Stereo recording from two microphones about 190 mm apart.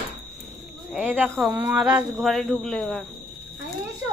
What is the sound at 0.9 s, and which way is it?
Speech, 5° right (ahead or behind).